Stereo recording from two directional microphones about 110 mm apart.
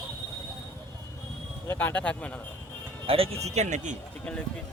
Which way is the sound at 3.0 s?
60° right (ahead or behind).